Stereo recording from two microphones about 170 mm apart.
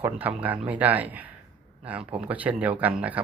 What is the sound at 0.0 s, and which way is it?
Speech, 10° right (ahead or behind).